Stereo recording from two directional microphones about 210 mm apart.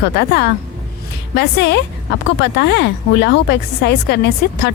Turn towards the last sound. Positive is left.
turn(degrees=55)  # may be behind; listen again after turning